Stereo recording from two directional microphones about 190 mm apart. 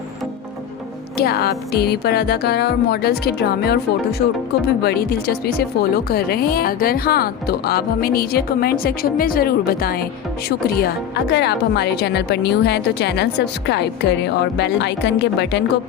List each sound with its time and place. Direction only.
1.1 s a woman's voice: 55° left (ahead or behind)